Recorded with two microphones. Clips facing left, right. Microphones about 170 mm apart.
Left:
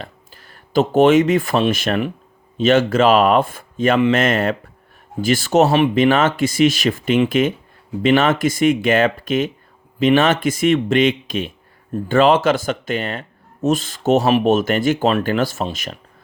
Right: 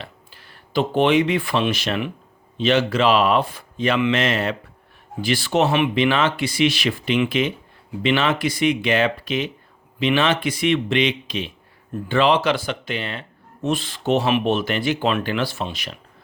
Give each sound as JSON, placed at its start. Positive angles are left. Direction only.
{"t": 0.0, "sound": "speech", "side_deg": 45}